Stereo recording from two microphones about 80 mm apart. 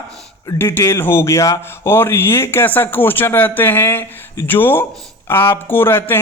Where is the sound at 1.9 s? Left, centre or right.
Left.